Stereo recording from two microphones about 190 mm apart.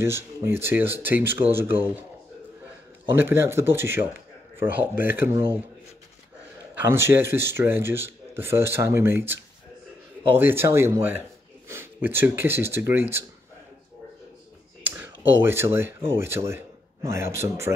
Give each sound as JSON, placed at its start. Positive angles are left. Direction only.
{"t": 0.0, "sound": "speech", "side_deg": -15}
{"t": 3.1, "sound": "speech", "side_deg": -10}
{"t": 6.8, "sound": "a man's voice", "side_deg": -10}
{"t": 14.8, "sound": "a sound", "side_deg": -10}
{"t": 15.2, "sound": "speech", "side_deg": -10}